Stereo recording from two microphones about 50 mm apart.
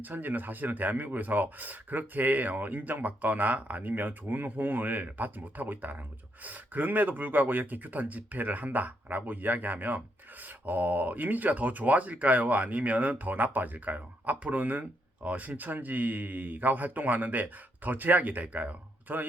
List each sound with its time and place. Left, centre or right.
0.0 s speech: right